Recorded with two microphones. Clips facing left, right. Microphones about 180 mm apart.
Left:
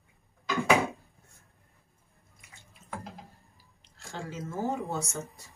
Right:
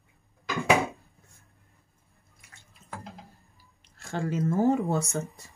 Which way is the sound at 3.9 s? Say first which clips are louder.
Right 9 dB; 55° right (ahead or behind).